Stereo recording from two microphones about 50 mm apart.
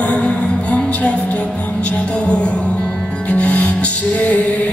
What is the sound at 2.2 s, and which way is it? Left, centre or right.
Music, left.